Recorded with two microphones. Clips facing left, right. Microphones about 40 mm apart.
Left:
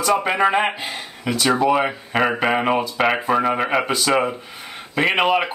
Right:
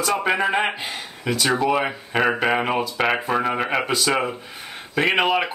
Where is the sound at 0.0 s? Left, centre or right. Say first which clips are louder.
Left 3 dB; centre.